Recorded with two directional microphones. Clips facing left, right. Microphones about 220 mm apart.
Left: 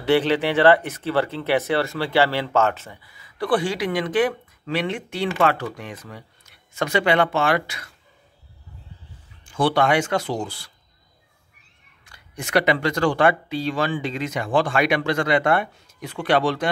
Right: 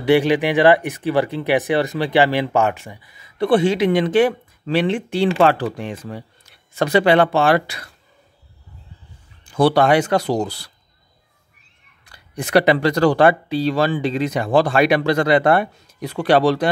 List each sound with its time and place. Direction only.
0.0 s speech: 15° right (ahead or behind); by 7.9 s 35° right (ahead or behind)
9.4 s speech: 40° right (ahead or behind)
12.0 s speech: 35° right (ahead or behind)